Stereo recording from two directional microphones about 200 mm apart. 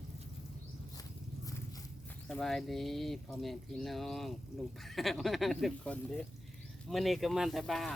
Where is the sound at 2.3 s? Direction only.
Centre (ahead or behind).